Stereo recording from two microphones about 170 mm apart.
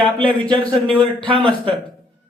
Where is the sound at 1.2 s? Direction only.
30° right (ahead or behind).